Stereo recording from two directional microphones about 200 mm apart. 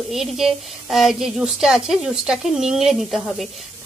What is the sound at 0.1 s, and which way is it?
A woman's voice, centre (ahead or behind).